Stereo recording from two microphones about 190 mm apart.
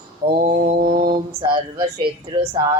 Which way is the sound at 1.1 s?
25° right (ahead or behind).